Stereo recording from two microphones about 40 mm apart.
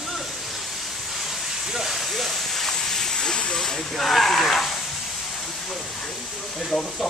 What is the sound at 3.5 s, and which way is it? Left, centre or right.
Speech, centre.